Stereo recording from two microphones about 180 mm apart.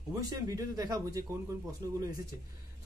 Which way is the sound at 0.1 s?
20° right (ahead or behind).